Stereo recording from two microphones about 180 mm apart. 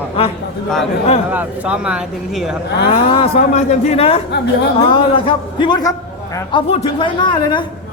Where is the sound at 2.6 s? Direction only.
70° left (ahead or behind).